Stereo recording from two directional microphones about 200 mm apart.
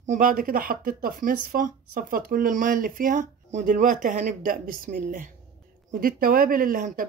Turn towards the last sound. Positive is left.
turn(degrees=-45)  # may be behind; listen again after turning